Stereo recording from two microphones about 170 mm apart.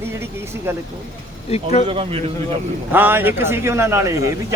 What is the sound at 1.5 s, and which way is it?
Speech, 40° left (ahead or behind).